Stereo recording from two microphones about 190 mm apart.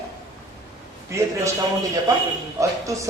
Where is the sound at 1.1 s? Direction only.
15° right (ahead or behind).